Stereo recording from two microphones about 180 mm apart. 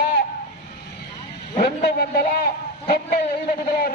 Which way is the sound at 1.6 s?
60° left (ahead or behind).